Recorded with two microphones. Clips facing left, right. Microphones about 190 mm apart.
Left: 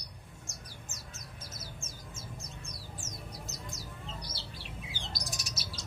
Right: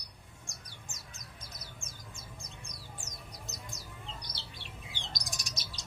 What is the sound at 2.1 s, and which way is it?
Bird, 15° right (ahead or behind).